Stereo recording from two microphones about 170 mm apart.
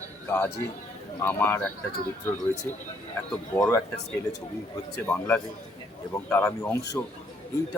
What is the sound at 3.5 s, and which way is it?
Speech, 10° left (ahead or behind).